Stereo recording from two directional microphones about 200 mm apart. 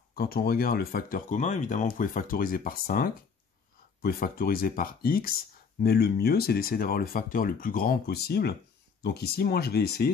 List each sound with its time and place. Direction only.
0.1 s speech: 50° left (ahead or behind)